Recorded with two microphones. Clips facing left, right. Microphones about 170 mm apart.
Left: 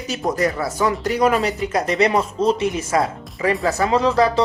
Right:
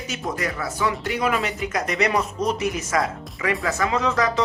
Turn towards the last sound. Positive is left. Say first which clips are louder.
# left 5 dB
turn(degrees=30)  # may be behind; listen again after turning